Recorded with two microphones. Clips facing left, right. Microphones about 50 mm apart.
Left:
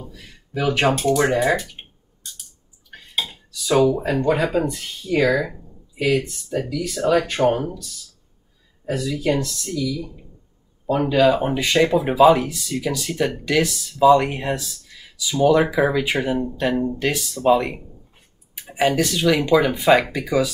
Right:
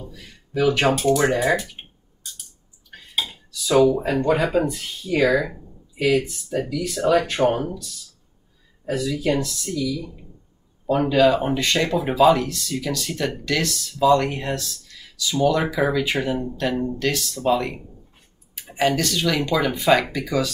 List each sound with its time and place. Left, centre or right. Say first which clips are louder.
0.1 s speech: right 3 dB; centre
1.8 s a sound: even; centre
2.9 s dishes: even; centre
3.8 s speech: even; centre